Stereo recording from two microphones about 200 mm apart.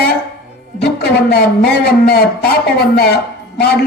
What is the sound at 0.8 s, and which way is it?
Speech, 55° left (ahead or behind).